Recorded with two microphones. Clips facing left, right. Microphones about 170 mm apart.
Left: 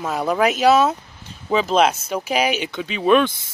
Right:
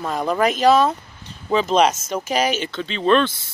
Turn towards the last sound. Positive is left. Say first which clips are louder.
# left 1 dB
turn(degrees=10)  # may be behind; listen again after turning